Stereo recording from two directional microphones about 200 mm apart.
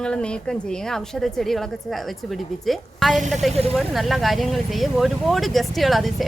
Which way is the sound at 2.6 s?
Centre (ahead or behind).